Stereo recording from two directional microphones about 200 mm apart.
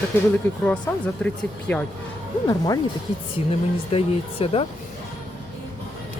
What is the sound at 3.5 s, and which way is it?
Speech, 30° left (ahead or behind).